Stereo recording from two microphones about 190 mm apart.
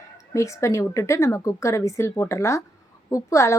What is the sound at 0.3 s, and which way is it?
Speech, 15° left (ahead or behind).